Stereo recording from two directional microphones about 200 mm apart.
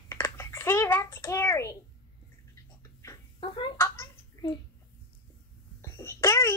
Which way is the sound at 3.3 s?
25° left (ahead or behind).